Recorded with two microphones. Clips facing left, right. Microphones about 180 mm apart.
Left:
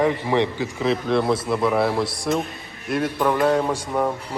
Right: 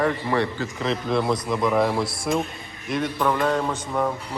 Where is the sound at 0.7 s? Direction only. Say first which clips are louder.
Left 3 dB; 5° left (ahead or behind).